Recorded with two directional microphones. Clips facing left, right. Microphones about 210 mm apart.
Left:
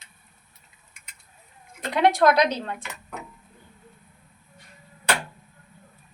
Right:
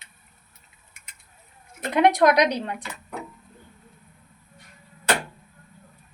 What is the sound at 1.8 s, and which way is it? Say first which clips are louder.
Speech: right 1 dB; 20° right (ahead or behind).